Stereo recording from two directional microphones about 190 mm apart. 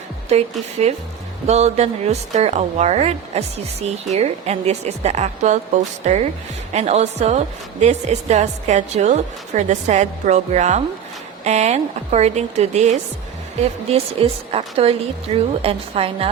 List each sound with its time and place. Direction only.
0.3 s a woman's voice: 35° right (ahead or behind)